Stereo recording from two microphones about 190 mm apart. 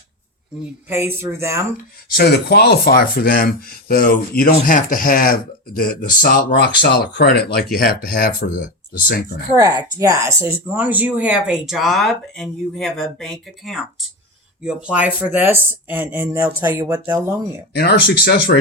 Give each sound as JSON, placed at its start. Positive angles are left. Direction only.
{"t": 0.9, "sound": "speech", "side_deg": -15}
{"t": 2.1, "sound": "speech", "side_deg": 60}
{"t": 6.8, "sound": "speech", "side_deg": 65}
{"t": 9.6, "sound": "speech", "side_deg": -20}
{"t": 17.7, "sound": "speech", "side_deg": 60}